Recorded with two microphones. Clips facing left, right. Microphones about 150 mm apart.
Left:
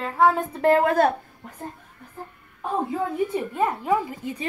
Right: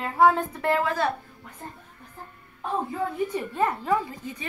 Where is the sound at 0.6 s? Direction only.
50° left (ahead or behind).